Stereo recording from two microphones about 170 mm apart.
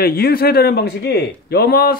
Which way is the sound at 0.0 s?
60° left (ahead or behind).